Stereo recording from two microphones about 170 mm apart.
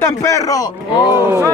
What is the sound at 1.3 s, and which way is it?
Speech, 15° right (ahead or behind).